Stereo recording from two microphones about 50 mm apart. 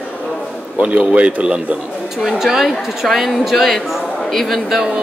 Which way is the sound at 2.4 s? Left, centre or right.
Centre.